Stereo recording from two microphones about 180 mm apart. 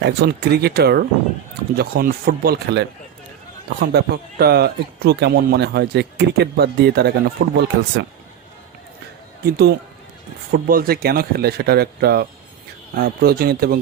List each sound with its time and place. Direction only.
0.0 s a man's voice: 65° right (ahead or behind)
9.4 s a man's voice: 60° right (ahead or behind)